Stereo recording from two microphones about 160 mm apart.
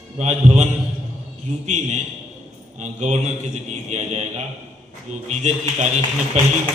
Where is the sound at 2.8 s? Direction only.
45° right (ahead or behind).